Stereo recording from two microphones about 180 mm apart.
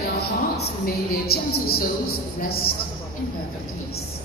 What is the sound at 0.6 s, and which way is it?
A woman's voice, 60° left (ahead or behind).